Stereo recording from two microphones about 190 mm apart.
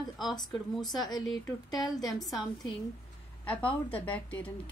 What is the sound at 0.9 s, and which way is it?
A woman's voice, 20° left (ahead or behind).